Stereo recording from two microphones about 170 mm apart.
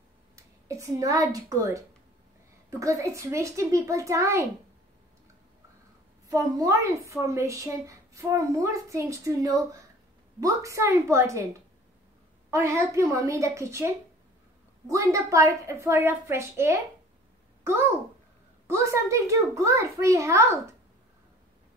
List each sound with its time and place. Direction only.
0.7 s a woman's voice: 20° right (ahead or behind)
2.8 s a woman's voice: 20° right (ahead or behind)
6.2 s a woman's voice: 20° right (ahead or behind)
12.4 s a woman's voice: 15° right (ahead or behind)
18.7 s a woman's voice: 15° right (ahead or behind)